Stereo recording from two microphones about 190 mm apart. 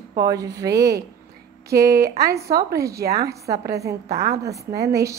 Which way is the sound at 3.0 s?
55° right (ahead or behind).